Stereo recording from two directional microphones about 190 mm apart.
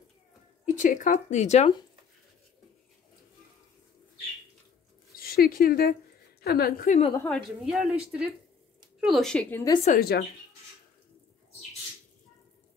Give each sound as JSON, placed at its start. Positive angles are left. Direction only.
{"t": 0.7, "sound": "speech", "side_deg": 45}
{"t": 5.1, "sound": "speech", "side_deg": 50}
{"t": 7.2, "sound": "a woman's voice", "side_deg": -5}
{"t": 9.9, "sound": "speech", "side_deg": 55}